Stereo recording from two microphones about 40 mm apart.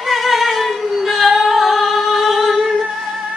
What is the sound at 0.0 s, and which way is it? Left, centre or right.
Music, centre.